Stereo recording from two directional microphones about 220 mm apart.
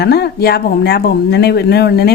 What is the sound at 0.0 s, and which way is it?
A woman's voice, 45° left (ahead or behind).